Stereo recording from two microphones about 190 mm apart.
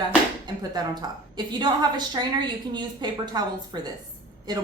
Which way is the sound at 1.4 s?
25° right (ahead or behind).